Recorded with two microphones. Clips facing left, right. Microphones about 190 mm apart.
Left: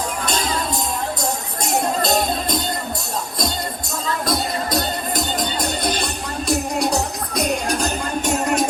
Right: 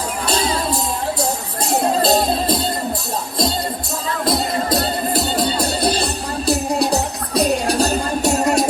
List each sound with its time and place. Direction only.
1.8 s music: 30° right (ahead or behind)
4.3 s music: 30° right (ahead or behind)